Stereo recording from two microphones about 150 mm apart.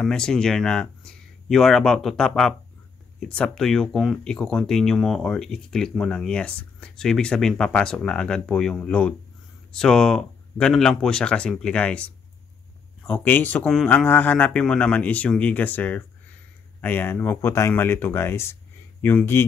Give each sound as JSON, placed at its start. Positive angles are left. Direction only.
{"t": 0.0, "sound": "speech", "side_deg": 5}
{"t": 13.7, "sound": "speech", "side_deg": 0}
{"t": 13.9, "sound": "speech", "side_deg": 10}